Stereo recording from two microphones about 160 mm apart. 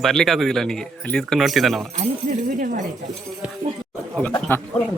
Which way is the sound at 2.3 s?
60° right (ahead or behind).